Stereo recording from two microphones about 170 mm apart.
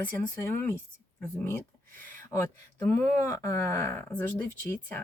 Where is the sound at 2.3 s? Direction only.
15° left (ahead or behind).